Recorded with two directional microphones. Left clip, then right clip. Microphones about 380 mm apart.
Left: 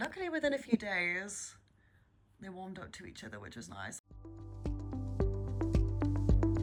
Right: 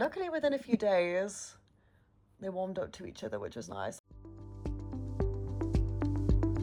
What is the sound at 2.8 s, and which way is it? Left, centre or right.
Speech, right.